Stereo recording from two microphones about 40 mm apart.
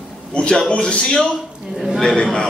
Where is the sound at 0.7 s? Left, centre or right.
Left.